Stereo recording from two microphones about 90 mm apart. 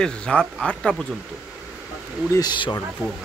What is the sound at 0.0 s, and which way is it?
Speech, 10° left (ahead or behind).